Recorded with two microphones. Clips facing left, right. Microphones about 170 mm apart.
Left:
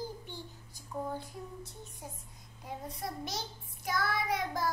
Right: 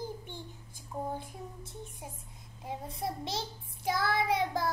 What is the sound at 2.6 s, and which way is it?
Child singing, 25° right (ahead or behind).